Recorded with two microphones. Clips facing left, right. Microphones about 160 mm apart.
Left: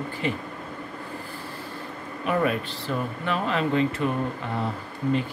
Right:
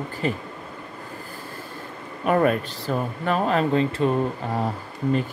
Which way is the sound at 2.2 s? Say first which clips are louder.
Right 4 dB; 45° right (ahead or behind).